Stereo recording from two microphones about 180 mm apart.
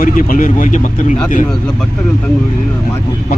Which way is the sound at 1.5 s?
5° left (ahead or behind).